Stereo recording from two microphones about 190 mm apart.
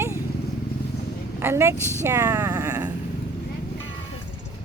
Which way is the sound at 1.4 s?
15° right (ahead or behind).